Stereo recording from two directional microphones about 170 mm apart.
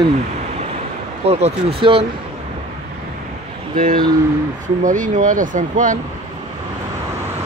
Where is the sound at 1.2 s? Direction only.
35° right (ahead or behind).